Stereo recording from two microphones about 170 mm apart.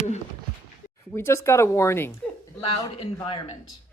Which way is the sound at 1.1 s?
15° left (ahead or behind).